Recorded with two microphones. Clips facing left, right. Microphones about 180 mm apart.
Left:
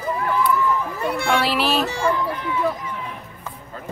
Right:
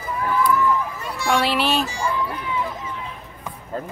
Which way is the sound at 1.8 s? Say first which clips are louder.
Left 3 dB; 60° left (ahead or behind).